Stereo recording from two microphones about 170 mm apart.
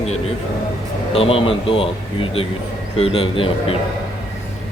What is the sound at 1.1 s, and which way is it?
A man's voice, 35° left (ahead or behind).